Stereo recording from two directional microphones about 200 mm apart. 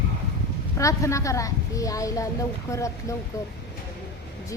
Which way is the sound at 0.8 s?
15° left (ahead or behind).